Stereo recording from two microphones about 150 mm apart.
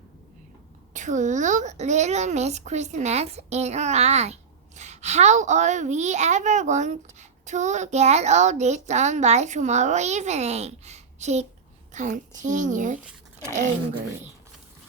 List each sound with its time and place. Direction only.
0.9 s a woman's voice: 55° right (ahead or behind)